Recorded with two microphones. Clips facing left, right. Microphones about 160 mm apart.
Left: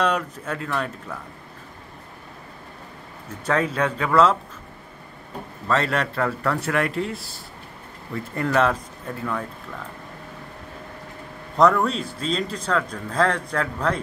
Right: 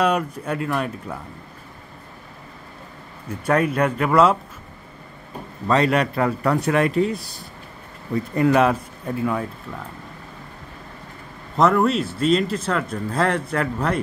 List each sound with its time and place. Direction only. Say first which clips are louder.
0.0 s speech: right 3 dB; 15° right (ahead or behind)
3.3 s speech: right 3 dB; 10° right (ahead or behind)
5.7 s speech: right 4 dB; 15° right (ahead or behind)
11.8 s speech: right 5 dB; 5° right (ahead or behind)